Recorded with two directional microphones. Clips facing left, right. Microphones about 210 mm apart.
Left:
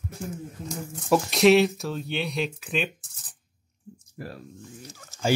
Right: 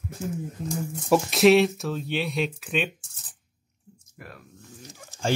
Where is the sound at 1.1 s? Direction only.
Centre (ahead or behind).